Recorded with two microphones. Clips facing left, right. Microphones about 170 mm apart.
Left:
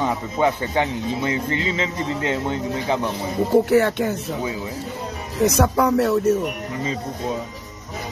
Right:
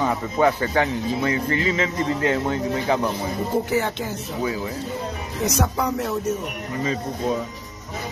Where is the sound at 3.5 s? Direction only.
65° left (ahead or behind).